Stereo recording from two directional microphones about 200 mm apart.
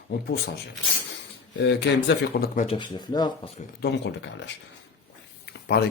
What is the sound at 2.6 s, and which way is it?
Speech, 25° left (ahead or behind).